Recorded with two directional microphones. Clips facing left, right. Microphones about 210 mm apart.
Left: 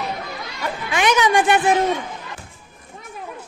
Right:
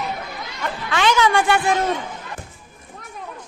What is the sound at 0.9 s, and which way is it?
Speech, 15° left (ahead or behind).